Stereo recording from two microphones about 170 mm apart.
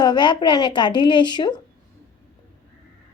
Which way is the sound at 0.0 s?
25° left (ahead or behind).